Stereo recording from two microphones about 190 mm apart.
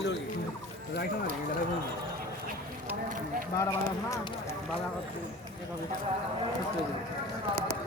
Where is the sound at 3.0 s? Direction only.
45° right (ahead or behind).